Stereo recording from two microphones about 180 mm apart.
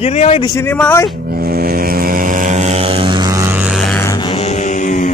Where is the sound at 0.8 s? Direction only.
10° left (ahead or behind).